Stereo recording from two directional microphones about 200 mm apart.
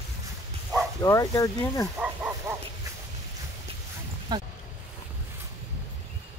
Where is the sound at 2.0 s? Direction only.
5° right (ahead or behind).